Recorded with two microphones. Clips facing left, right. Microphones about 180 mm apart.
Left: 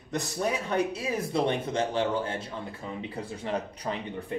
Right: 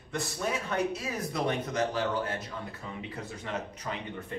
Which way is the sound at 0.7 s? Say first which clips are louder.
Left 3 dB; 30° left (ahead or behind).